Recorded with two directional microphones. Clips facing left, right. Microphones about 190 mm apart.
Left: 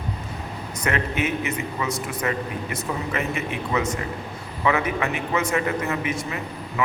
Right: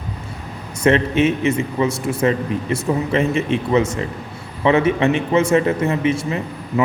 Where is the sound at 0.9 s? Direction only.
25° right (ahead or behind).